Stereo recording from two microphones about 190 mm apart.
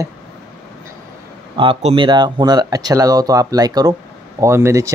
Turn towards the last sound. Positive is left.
turn(degrees=-15)  # may be behind; listen again after turning